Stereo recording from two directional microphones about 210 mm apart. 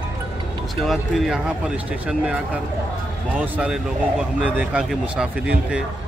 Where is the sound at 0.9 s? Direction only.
Centre (ahead or behind).